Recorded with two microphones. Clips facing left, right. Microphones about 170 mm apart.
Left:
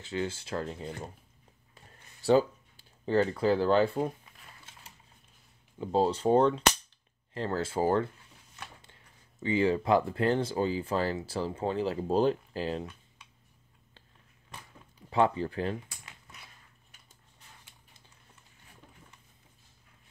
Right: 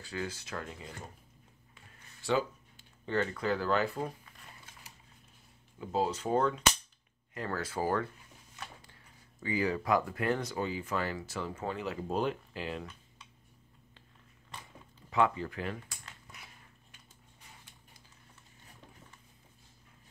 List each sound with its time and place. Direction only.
0.0 s speech: 25° left (ahead or behind)
1.8 s a sound: 35° left (ahead or behind)
5.8 s speech: 30° left (ahead or behind)
15.0 s speech: 30° left (ahead or behind)